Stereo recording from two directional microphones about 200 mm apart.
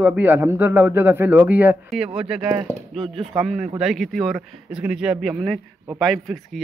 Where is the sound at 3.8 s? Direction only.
Centre (ahead or behind).